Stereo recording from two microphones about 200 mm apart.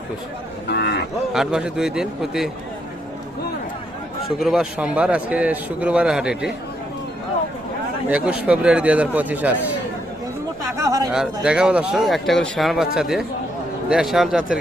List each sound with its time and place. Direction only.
0.7 s speech: 55° left (ahead or behind)
1.3 s speech: centre (ahead or behind)
4.4 s a man's voice: centre (ahead or behind)
8.0 s a man's voice: 5° right (ahead or behind)
10.8 s a sound: 15° right (ahead or behind)
11.1 s speech: 5° right (ahead or behind)